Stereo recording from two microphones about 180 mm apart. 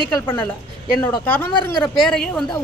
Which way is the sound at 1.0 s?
10° left (ahead or behind).